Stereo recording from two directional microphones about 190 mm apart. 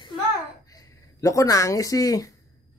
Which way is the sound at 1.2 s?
15° left (ahead or behind).